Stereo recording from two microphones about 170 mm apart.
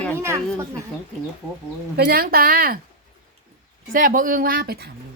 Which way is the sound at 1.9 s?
65° right (ahead or behind).